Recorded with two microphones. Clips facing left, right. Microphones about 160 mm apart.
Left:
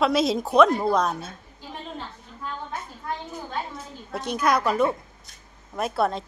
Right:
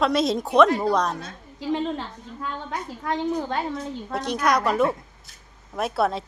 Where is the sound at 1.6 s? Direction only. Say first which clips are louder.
Right 11 dB; 90° right.